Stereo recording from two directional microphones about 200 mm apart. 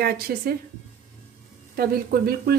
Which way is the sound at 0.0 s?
50° right (ahead or behind).